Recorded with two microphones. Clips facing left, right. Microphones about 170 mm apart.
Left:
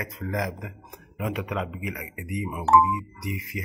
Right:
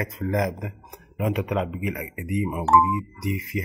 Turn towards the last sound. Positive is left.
turn(degrees=-30)  # may be behind; listen again after turning